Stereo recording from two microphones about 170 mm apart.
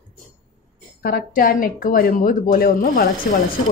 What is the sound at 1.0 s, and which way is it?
Speech, 60° left (ahead or behind).